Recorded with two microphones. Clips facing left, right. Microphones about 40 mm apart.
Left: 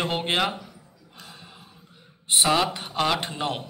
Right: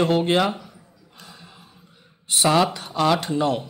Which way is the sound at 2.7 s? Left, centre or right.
Left.